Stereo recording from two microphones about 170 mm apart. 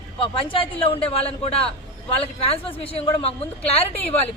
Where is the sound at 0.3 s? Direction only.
30° left (ahead or behind).